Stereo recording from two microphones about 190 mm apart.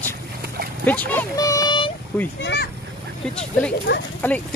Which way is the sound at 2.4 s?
65° left (ahead or behind).